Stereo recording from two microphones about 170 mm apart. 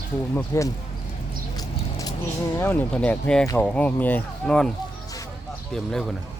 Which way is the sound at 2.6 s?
10° left (ahead or behind).